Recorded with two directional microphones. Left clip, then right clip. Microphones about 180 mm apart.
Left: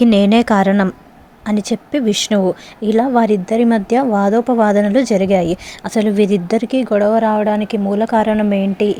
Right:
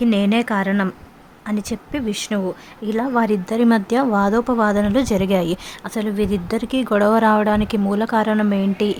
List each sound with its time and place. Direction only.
0.0 s a woman's voice: 25° left (ahead or behind); by 5.5 s 10° left (ahead or behind)
5.8 s a woman's voice: 20° left (ahead or behind)